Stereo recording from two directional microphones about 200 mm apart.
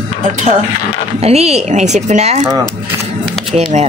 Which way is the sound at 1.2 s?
30° right (ahead or behind).